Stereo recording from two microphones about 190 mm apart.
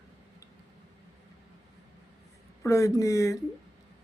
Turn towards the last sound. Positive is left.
turn(degrees=15)  # may be behind; listen again after turning